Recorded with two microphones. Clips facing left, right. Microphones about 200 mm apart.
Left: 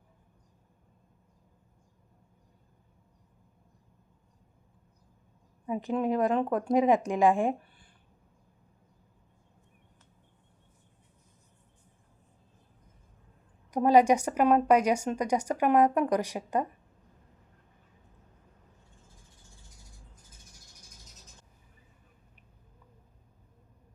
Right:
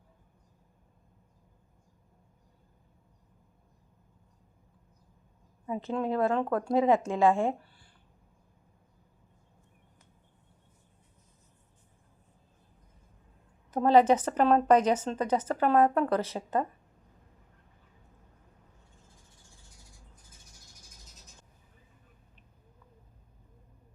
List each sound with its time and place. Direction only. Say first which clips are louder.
5.6 s a woman's voice: left 2 dB; 15° left (ahead or behind)
13.7 s a woman's voice: even; 15° left (ahead or behind)